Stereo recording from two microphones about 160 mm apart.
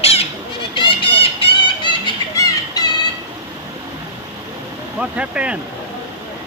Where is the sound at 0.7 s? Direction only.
35° left (ahead or behind).